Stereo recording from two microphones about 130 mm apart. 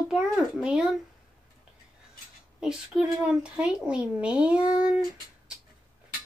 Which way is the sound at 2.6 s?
5° right (ahead or behind).